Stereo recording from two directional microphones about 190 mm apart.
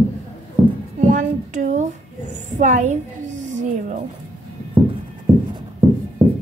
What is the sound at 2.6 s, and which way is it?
Speech, 40° right (ahead or behind).